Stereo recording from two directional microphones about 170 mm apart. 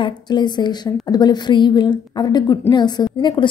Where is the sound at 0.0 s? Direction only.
25° left (ahead or behind).